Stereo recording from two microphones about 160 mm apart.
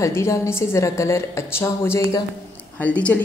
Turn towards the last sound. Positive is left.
turn(degrees=10)  # may be behind; listen again after turning